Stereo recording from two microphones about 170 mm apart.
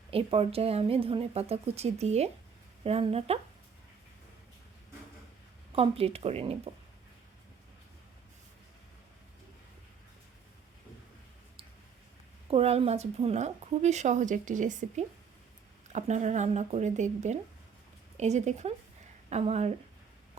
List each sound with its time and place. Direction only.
0.1 s speech: 35° right (ahead or behind)
5.7 s speech: 35° right (ahead or behind)
12.5 s a woman's voice: 35° right (ahead or behind)